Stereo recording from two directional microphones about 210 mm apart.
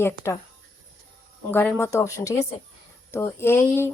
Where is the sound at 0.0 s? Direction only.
10° left (ahead or behind).